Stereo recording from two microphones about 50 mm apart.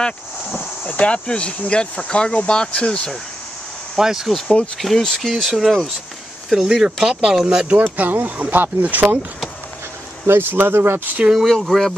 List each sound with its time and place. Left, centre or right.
0.8 s speech: left
4.0 s speech: centre
4.7 s speech: centre
5.2 s speech: centre
7.4 s speech: right
7.8 s speech: right
10.2 s speech: right
11.3 s speech: centre